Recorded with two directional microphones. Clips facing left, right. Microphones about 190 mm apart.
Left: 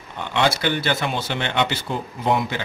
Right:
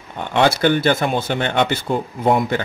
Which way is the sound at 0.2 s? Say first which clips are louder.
Right 5 dB; 50° right (ahead or behind).